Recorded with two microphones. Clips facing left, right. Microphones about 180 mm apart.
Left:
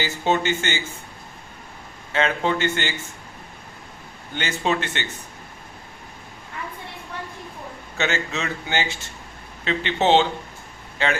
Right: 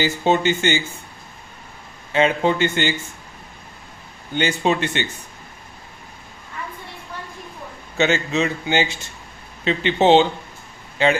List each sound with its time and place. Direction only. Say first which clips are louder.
0.0 s speech: right 4 dB; 15° right (ahead or behind)
2.1 s speech: right 4 dB; 15° right (ahead or behind)
4.4 s speech: right 4 dB; 15° right (ahead or behind)
7.9 s a man's voice: right 6 dB; 20° right (ahead or behind)